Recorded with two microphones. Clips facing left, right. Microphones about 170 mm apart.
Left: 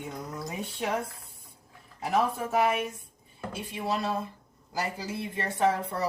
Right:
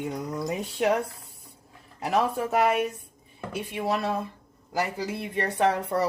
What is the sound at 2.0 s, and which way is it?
A woman's voice, 70° right (ahead or behind).